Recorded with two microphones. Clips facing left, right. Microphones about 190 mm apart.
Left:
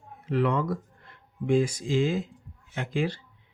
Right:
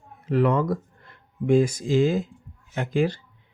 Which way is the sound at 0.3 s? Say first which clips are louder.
Right 4 dB; 45° right (ahead or behind).